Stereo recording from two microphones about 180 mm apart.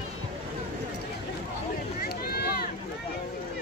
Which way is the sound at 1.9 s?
60° left (ahead or behind).